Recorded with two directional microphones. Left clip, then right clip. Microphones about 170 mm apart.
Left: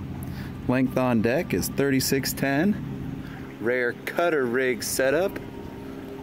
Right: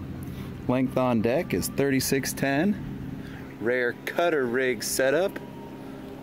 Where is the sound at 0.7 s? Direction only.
5° right (ahead or behind).